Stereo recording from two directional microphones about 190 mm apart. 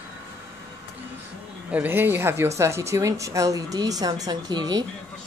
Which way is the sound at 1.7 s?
10° right (ahead or behind).